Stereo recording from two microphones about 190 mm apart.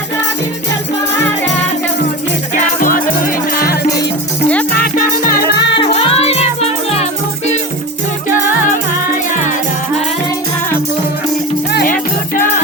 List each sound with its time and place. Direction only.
2.8 s music: 45° left (ahead or behind)
4.9 s music: 50° left (ahead or behind)
5.7 s music: 30° left (ahead or behind)